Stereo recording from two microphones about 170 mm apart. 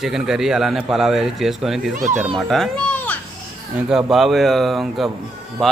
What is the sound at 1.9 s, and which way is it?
Speech, 45° right (ahead or behind).